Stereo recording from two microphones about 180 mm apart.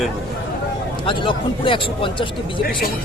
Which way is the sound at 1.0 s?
30° left (ahead or behind).